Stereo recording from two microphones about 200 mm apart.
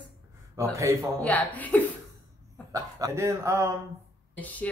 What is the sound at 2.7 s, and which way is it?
Speech, 15° right (ahead or behind).